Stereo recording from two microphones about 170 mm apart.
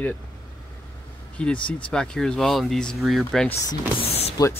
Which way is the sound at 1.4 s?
5° left (ahead or behind).